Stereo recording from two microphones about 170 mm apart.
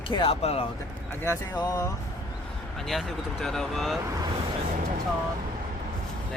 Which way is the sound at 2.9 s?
Centre (ahead or behind).